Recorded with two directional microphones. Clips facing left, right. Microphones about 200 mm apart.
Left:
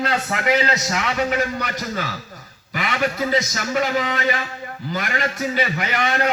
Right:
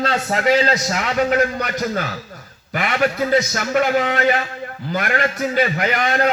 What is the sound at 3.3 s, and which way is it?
A man's voice, 55° right (ahead or behind).